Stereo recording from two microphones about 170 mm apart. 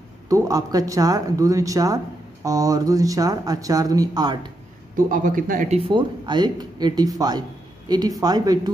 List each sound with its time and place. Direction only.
0.3 s speech: 20° right (ahead or behind)
4.9 s speech: 55° right (ahead or behind)
5.9 s speech: 25° right (ahead or behind)